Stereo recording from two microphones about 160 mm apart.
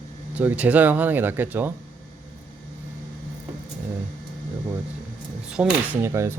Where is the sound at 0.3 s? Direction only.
10° right (ahead or behind).